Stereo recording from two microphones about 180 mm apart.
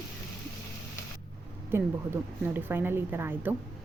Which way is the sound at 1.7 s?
10° right (ahead or behind).